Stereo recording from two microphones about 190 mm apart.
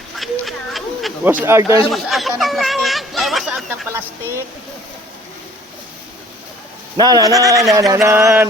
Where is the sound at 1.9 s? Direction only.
Centre (ahead or behind).